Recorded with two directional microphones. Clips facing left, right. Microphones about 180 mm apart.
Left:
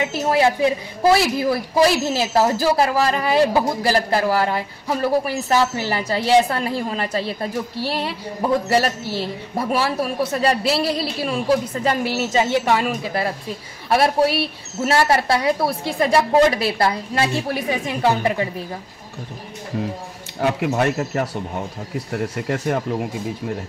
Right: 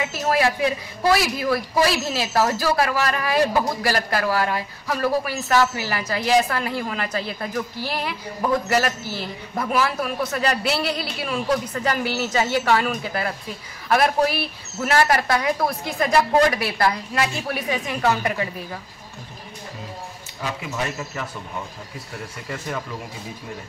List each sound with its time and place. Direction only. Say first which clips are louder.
0.0 s speech: left 3 dB; 25° left (ahead or behind)
20.3 s speech: left 9 dB; 60° left (ahead or behind)